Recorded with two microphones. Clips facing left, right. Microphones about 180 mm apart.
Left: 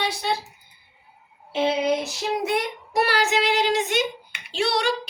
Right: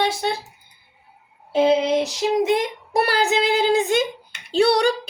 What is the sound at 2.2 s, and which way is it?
Speech, 20° right (ahead or behind).